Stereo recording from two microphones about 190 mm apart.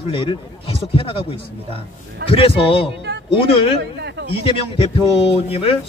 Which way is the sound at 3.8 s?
65° right (ahead or behind).